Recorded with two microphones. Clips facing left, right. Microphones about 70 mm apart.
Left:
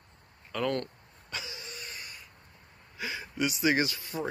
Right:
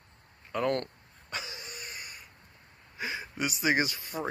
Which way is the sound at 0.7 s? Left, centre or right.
Right.